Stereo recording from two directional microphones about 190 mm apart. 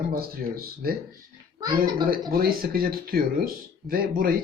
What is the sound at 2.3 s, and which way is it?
Speech, 50° right (ahead or behind).